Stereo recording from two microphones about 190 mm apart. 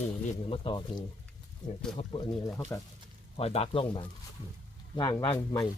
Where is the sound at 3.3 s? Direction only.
30° left (ahead or behind).